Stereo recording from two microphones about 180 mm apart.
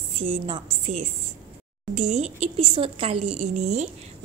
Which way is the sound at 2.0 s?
40° right (ahead or behind).